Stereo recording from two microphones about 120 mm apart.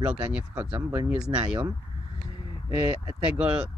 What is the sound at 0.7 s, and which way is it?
Speech, 30° right (ahead or behind).